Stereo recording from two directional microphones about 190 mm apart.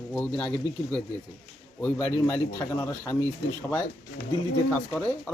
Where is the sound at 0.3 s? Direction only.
5° left (ahead or behind).